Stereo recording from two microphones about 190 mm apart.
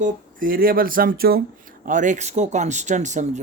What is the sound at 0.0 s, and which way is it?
Speech, 45° right (ahead or behind).